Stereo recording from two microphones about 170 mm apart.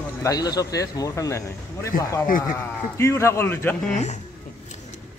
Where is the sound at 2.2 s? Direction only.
55° left (ahead or behind).